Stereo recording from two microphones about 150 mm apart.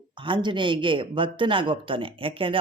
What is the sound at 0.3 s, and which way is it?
Speech, 30° right (ahead or behind).